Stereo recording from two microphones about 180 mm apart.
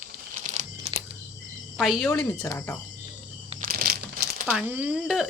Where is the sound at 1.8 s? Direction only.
Centre (ahead or behind).